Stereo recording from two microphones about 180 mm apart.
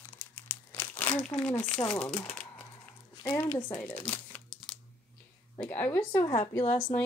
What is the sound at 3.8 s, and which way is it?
Speech, 10° left (ahead or behind).